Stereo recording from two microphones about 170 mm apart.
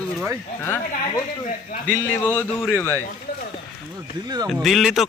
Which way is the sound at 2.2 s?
10° left (ahead or behind).